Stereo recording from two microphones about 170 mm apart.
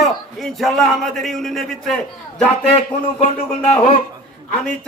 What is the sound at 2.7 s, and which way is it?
Speech, 35° left (ahead or behind).